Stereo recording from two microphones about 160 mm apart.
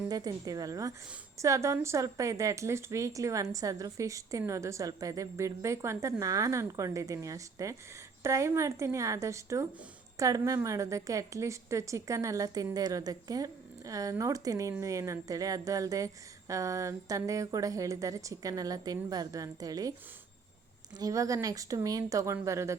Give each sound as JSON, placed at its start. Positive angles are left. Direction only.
{"t": 0.1, "sound": "a woman's voice", "side_deg": -25}
{"t": 21.0, "sound": "a woman's voice", "side_deg": -20}